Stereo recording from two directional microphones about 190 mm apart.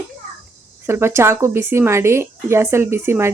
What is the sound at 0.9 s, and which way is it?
A woman's voice, 15° right (ahead or behind).